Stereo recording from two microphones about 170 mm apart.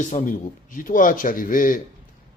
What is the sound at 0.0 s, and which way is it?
Speech, 45° left (ahead or behind).